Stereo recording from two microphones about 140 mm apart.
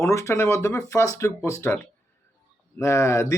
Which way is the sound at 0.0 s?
20° left (ahead or behind).